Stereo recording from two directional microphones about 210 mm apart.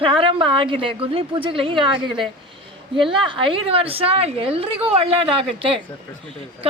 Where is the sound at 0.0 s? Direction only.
25° right (ahead or behind).